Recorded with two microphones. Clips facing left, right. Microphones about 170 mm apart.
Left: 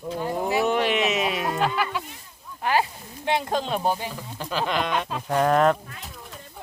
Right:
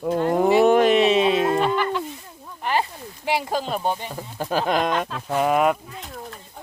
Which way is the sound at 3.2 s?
5° right (ahead or behind).